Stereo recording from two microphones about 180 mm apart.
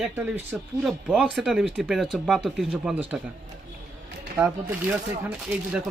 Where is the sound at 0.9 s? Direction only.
5° right (ahead or behind).